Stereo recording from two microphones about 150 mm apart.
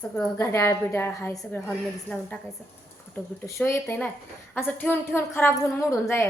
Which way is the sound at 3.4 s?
20° left (ahead or behind).